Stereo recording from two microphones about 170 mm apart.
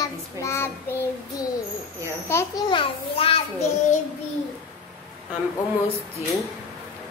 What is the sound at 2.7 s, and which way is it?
Speech, 30° left (ahead or behind).